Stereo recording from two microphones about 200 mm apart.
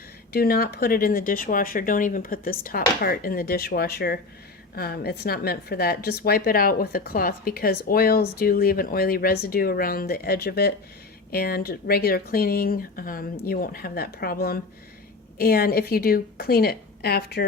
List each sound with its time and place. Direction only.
0.3 s a woman's voice: 50° left (ahead or behind)